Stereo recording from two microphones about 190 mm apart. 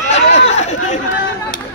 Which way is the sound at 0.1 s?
35° left (ahead or behind).